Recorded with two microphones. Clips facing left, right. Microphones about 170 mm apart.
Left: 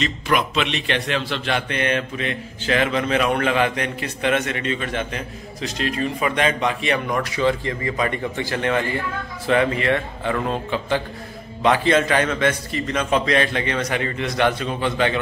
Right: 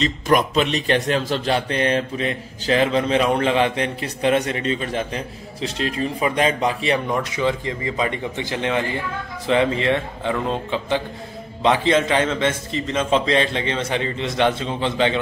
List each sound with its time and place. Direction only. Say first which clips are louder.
0.0 s a man's voice: right 3 dB; 40° right (ahead or behind)
7.2 s a man's voice: left 1 dB; 15° right (ahead or behind)